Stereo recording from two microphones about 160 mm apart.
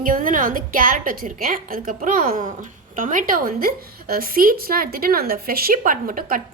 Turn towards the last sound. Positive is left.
turn(degrees=-60)  # may be behind; listen again after turning